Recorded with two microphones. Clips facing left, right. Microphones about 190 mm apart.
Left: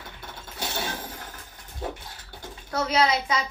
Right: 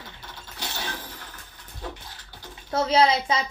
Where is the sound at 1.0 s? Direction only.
45° left (ahead or behind).